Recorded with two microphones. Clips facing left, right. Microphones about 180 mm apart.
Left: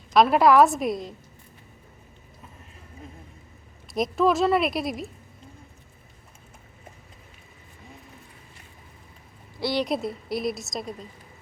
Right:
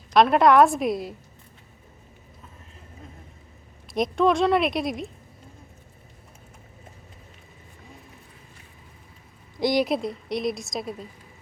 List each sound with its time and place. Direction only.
0.1 s a woman's voice: centre (ahead or behind)
3.8 s a woman's voice: centre (ahead or behind)
9.6 s speech: 15° right (ahead or behind)
9.8 s a woman's voice: centre (ahead or behind)